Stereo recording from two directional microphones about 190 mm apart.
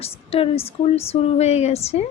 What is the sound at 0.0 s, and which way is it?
Speech, 30° left (ahead or behind).